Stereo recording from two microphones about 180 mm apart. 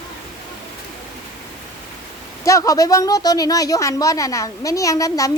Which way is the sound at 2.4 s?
20° left (ahead or behind).